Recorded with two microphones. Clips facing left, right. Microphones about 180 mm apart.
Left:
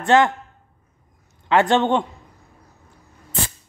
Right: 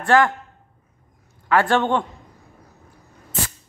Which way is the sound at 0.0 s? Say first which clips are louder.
Left 1 dB; 20° left (ahead or behind).